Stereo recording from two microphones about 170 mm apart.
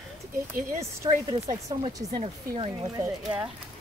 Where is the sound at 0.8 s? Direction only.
20° right (ahead or behind).